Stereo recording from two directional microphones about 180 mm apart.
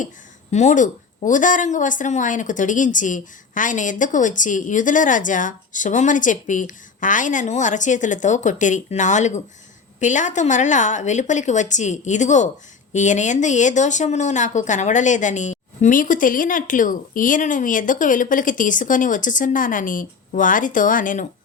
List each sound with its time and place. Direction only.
0.5 s a woman's voice: 40° left (ahead or behind)